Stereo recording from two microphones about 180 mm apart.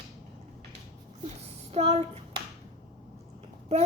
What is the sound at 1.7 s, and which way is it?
Speech, 35° right (ahead or behind).